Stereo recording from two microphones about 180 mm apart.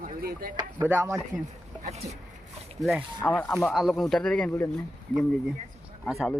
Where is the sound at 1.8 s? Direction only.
40° right (ahead or behind).